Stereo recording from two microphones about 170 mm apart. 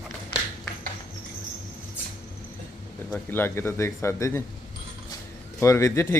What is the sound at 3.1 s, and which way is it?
A man's voice, 10° left (ahead or behind).